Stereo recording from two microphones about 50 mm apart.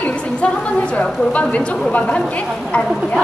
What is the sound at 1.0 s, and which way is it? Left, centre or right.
Speech, left.